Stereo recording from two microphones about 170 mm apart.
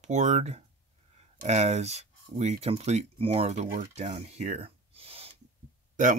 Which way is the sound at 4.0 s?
40° right (ahead or behind).